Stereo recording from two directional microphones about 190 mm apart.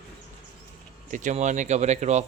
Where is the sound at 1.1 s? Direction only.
40° right (ahead or behind).